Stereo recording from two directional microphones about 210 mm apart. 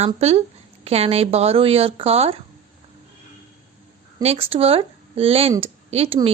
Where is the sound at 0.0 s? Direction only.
30° right (ahead or behind).